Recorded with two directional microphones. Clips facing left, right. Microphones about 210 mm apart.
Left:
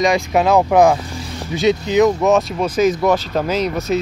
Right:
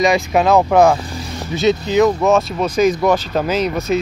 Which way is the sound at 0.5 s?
15° left (ahead or behind).